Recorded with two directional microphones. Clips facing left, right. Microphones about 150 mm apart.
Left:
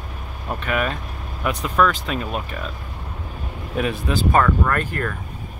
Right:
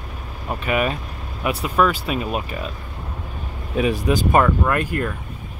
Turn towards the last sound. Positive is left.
turn(degrees=-10)  # may be behind; listen again after turning